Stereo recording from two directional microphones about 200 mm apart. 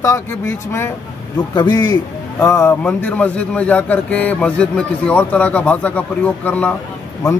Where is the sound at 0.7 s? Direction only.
10° left (ahead or behind).